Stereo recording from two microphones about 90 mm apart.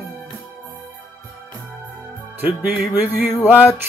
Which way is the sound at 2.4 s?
20° right (ahead or behind).